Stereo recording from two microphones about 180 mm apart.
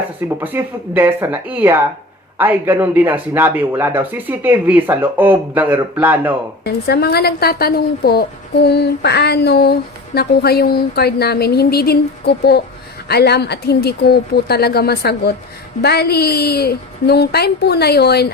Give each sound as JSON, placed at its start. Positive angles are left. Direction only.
{"t": 0.3, "sound": "speech", "side_deg": -10}
{"t": 6.7, "sound": "a woman's voice", "side_deg": 65}